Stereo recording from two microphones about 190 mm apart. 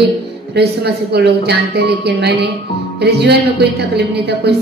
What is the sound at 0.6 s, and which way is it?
A woman's voice, 60° right (ahead or behind).